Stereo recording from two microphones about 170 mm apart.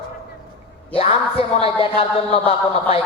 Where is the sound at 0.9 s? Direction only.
35° left (ahead or behind).